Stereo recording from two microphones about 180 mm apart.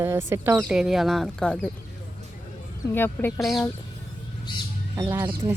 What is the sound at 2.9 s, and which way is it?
Speech, 10° left (ahead or behind).